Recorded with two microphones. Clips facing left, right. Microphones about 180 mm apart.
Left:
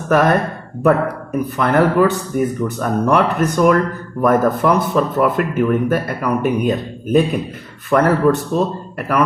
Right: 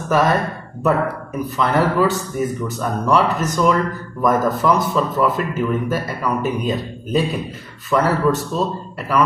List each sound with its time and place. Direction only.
0.1 s speech: 60° left (ahead or behind)
1.6 s speech: 55° left (ahead or behind)